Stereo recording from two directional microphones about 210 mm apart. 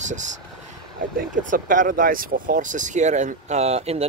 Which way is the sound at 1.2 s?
40° right (ahead or behind).